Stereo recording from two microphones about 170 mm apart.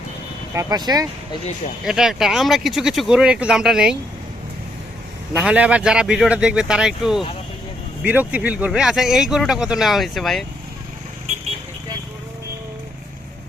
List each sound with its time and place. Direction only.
0.5 s speech: 20° right (ahead or behind)
1.8 s speech: centre (ahead or behind)
5.3 s speech: 5° right (ahead or behind)